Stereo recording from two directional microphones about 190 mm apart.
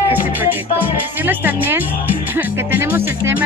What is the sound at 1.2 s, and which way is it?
Speech, 10° right (ahead or behind).